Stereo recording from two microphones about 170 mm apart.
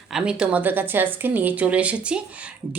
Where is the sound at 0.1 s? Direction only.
5° right (ahead or behind).